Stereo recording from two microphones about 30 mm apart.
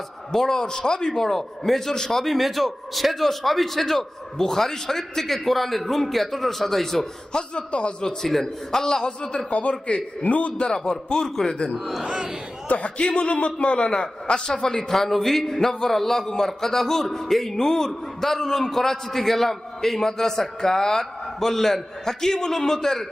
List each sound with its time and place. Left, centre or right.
0.3 s a man's voice: centre
1.9 s a man's voice: centre
2.1 s a man's voice: centre
3.8 s a man's voice: centre
7.3 s a man's voice: left
7.7 s a man's voice: left
8.3 s a man's voice: centre
9.0 s a man's voice: left
9.5 s speech: left
10.6 s a man's voice: left
11.7 s a man's voice: centre
12.6 s a man's voice: left
13.0 s a man's voice: left
14.8 s a man's voice: centre